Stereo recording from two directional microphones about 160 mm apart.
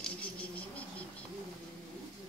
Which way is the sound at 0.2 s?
10° left (ahead or behind).